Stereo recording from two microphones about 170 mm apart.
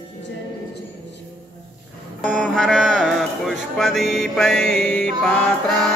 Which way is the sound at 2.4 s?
Centre (ahead or behind).